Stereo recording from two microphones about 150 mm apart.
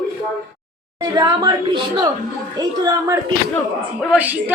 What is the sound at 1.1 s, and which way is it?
A woman's voice, 30° right (ahead or behind).